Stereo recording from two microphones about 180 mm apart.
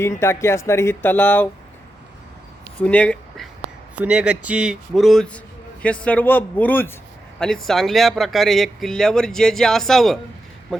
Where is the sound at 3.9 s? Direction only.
5° right (ahead or behind).